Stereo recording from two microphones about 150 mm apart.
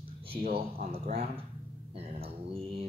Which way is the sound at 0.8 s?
45° right (ahead or behind).